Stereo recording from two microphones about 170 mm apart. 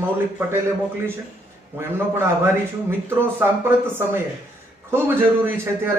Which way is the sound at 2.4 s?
15° right (ahead or behind).